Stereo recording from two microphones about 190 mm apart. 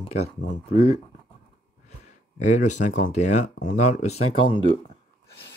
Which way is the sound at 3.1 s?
40° left (ahead or behind).